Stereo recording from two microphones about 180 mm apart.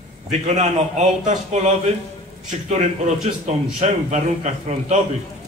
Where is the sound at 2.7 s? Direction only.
40° right (ahead or behind).